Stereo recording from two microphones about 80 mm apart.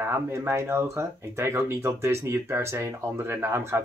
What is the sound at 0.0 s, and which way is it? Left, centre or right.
Speech, right.